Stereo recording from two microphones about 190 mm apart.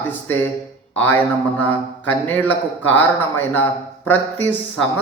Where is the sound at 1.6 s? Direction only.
10° left (ahead or behind).